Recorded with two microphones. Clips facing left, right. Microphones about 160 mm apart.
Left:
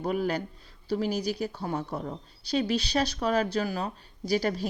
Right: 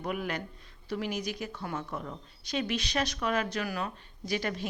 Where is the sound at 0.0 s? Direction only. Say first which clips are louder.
Left 6 dB; 35° left (ahead or behind).